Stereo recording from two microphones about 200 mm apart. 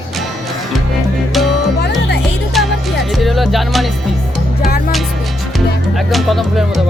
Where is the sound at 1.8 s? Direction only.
60° left (ahead or behind).